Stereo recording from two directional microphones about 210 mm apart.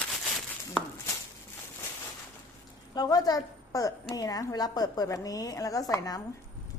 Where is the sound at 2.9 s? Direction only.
20° left (ahead or behind).